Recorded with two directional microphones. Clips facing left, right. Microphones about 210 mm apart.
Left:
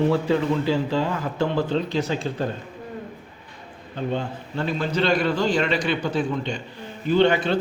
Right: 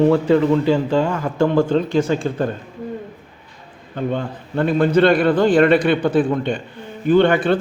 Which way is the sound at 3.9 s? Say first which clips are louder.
Right 4 dB; 55° right (ahead or behind).